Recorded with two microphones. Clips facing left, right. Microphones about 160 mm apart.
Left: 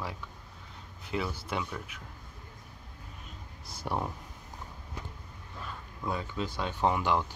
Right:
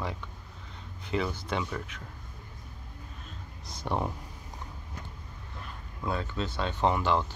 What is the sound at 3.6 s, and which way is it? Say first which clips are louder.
Speech: right 2 dB; 5° left (ahead or behind).